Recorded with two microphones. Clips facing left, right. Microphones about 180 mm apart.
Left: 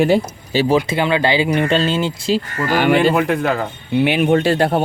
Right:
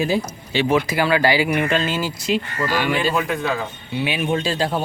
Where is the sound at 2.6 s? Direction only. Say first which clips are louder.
Left 8 dB; 55° left (ahead or behind).